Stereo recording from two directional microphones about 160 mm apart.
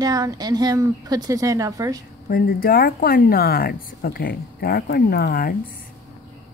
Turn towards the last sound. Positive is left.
turn(degrees=70)  # may be behind; listen again after turning